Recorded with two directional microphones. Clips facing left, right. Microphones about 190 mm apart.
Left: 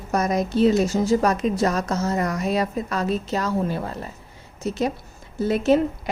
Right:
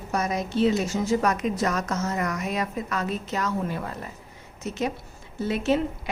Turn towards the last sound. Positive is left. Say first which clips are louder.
# left 5 dB
turn(degrees=40)  # may be behind; listen again after turning